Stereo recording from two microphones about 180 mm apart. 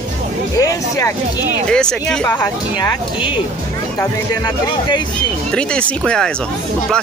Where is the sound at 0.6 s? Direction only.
15° left (ahead or behind).